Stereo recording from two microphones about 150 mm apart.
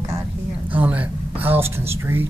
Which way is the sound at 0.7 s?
10° right (ahead or behind).